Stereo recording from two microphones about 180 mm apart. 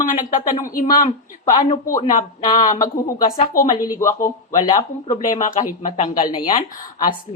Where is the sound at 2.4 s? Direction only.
25° left (ahead or behind).